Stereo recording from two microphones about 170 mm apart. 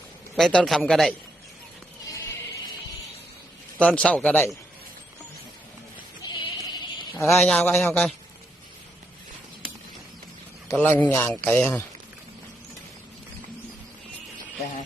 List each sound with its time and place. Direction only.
0.3 s a man's voice: centre (ahead or behind)
3.8 s a man's voice: 5° left (ahead or behind)
6.2 s bleat: 25° left (ahead or behind)
7.3 s a man's voice: centre (ahead or behind)
10.8 s a man's voice: 10° left (ahead or behind)